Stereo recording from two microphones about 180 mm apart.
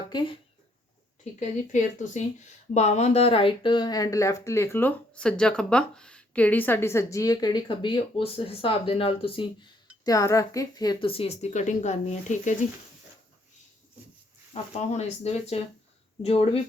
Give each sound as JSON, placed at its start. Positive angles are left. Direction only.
{"t": 0.1, "sound": "speech", "side_deg": 25}
{"t": 1.2, "sound": "speech", "side_deg": 40}
{"t": 10.0, "sound": "speech", "side_deg": 20}
{"t": 14.5, "sound": "speech", "side_deg": 35}